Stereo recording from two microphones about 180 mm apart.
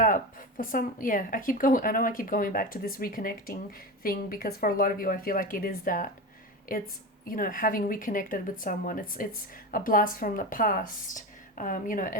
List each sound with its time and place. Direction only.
0.0 s speech: 50° left (ahead or behind)